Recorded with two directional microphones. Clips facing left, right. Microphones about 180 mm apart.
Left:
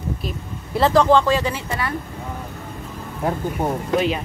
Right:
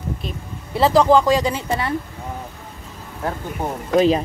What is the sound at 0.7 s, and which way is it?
Speech, 5° right (ahead or behind).